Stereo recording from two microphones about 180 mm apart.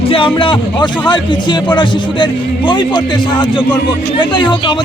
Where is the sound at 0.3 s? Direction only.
30° left (ahead or behind).